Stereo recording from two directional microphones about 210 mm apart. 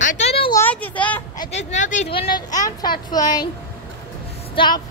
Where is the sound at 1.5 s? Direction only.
35° left (ahead or behind).